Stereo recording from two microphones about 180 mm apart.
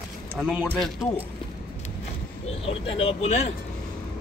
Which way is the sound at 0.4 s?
5° right (ahead or behind).